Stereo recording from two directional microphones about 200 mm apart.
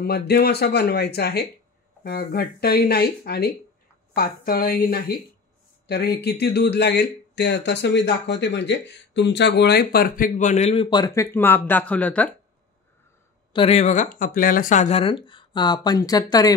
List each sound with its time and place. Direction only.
0.3 s speech: 55° left (ahead or behind); by 12.4 s 5° left (ahead or behind)
13.5 s speech: 30° left (ahead or behind)